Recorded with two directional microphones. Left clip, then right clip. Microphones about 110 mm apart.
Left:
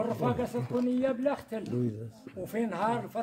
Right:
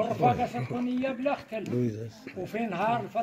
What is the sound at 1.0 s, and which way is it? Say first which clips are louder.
Speech: even; 40° left (ahead or behind).